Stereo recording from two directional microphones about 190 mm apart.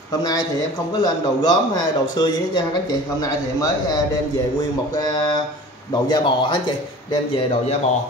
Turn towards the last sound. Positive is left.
turn(degrees=25)  # may be behind; listen again after turning